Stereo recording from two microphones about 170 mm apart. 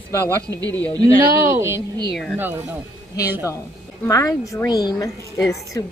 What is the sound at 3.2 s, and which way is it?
Speech, 10° right (ahead or behind).